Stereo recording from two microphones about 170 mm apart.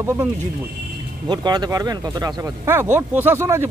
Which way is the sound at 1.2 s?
25° right (ahead or behind).